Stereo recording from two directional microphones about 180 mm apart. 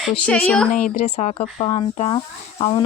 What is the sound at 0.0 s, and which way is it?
Speech, centre (ahead or behind).